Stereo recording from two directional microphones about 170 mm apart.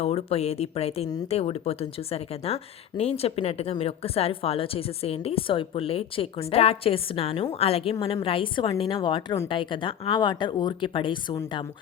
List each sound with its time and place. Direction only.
0.0 s a woman's voice: 35° left (ahead or behind)